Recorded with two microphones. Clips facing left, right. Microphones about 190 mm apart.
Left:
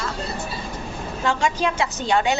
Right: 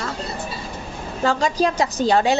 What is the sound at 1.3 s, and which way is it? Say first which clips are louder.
A woman's voice: right 3 dB; 35° right (ahead or behind).